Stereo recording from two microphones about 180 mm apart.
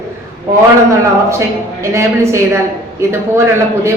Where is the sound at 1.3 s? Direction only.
15° right (ahead or behind).